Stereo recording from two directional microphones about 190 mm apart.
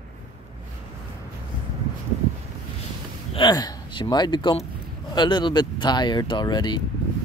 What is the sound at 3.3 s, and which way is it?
Speech, 20° left (ahead or behind).